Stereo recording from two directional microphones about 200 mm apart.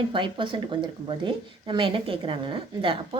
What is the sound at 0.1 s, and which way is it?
A woman's voice, 25° right (ahead or behind).